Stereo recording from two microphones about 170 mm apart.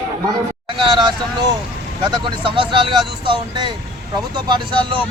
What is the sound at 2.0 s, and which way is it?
Speech, 25° right (ahead or behind).